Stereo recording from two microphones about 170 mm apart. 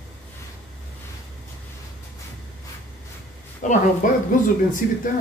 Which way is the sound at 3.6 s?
45° left (ahead or behind).